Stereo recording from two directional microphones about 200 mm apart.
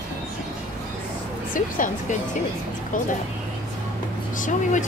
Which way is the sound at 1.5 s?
40° left (ahead or behind).